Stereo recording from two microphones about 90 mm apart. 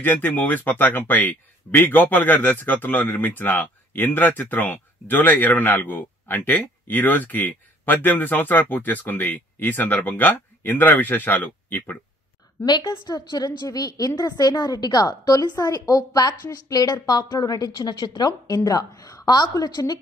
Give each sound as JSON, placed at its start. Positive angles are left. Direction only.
{"t": 0.0, "sound": "speech", "side_deg": 20}
{"t": 12.9, "sound": "a woman's voice", "side_deg": 55}
{"t": 17.7, "sound": "a woman's voice", "side_deg": 60}
{"t": 18.5, "sound": "a woman's voice", "side_deg": 40}